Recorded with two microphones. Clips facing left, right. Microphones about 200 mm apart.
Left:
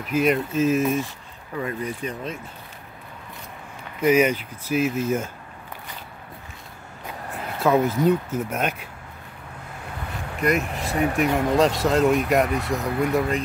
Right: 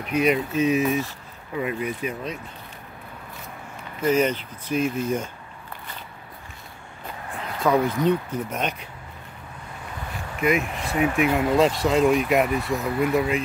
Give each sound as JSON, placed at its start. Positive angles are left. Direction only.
{"t": 0.0, "sound": "speech", "side_deg": 0}
{"t": 1.6, "sound": "speech", "side_deg": -10}
{"t": 4.0, "sound": "speech", "side_deg": 10}
{"t": 7.3, "sound": "speech", "side_deg": 5}
{"t": 10.4, "sound": "speech", "side_deg": 0}